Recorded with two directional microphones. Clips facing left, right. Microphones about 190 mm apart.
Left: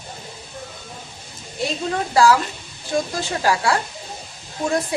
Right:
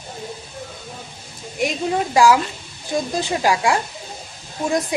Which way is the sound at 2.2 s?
15° right (ahead or behind).